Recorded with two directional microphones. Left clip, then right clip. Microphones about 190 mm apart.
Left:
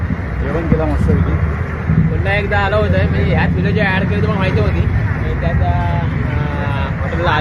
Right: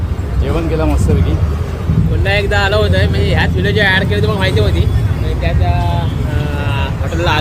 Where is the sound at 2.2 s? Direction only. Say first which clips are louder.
Right 3 dB; 25° right (ahead or behind).